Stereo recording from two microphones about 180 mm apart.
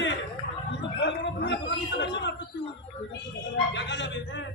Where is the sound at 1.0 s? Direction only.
75° left (ahead or behind).